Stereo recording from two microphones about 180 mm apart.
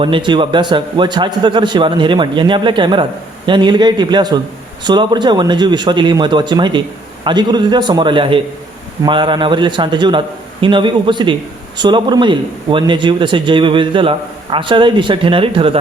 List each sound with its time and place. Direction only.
0.0 s speech: 25° right (ahead or behind)